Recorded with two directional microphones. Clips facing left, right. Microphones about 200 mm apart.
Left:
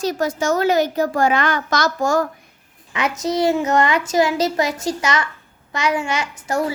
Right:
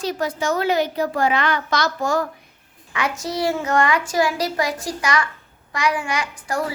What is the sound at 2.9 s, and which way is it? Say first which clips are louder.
A child's voice: left 4 dB; 20° left (ahead or behind).